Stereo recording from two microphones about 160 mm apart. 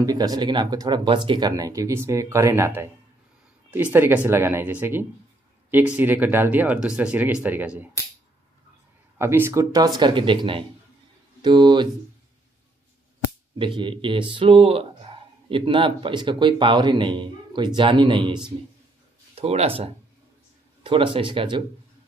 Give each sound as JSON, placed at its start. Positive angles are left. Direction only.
{"t": 0.0, "sound": "speech", "side_deg": -20}
{"t": 9.2, "sound": "speech", "side_deg": -15}
{"t": 13.6, "sound": "speech", "side_deg": -30}